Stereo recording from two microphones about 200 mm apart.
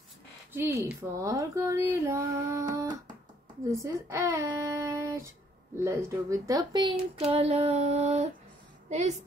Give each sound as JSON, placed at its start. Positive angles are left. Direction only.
{"t": 0.5, "sound": "speech", "side_deg": -10}
{"t": 7.2, "sound": "female singing", "side_deg": -30}